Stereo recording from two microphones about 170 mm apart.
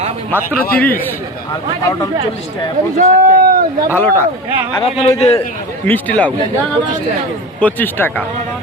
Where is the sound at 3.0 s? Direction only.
50° right (ahead or behind).